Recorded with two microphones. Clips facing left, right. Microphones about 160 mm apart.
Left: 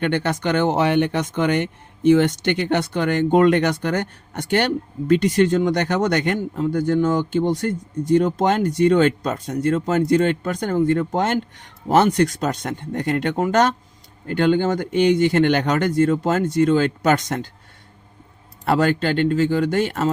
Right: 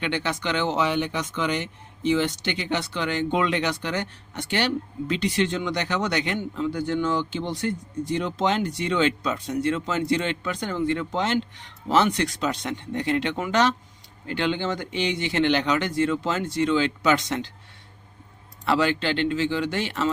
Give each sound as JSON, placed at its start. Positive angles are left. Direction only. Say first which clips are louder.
{"t": 0.0, "sound": "speech", "louder": "left 6 dB", "side_deg": 50}
{"t": 18.6, "sound": "speech", "louder": "left 4 dB", "side_deg": 45}